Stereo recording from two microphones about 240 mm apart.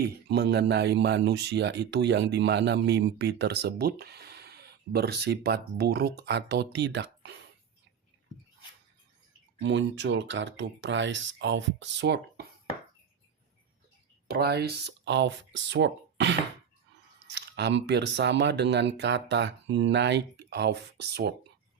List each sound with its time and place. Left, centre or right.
0.0 s speech: right
9.6 s speech: right
14.3 s speech: right